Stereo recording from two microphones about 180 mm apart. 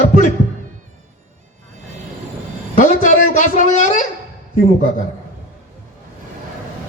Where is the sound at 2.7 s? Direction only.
45° left (ahead or behind).